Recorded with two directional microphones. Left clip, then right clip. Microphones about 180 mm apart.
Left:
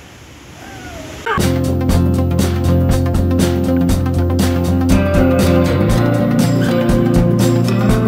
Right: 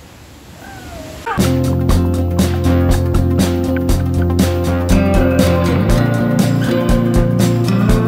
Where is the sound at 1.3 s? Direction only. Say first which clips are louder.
Right 2 dB; centre (ahead or behind).